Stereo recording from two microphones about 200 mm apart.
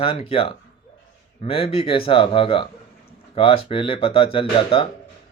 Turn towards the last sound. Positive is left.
turn(degrees=25)  # may be behind; listen again after turning